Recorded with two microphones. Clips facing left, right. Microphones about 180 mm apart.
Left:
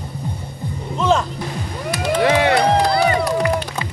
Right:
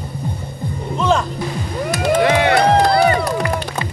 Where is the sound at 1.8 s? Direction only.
45° right (ahead or behind).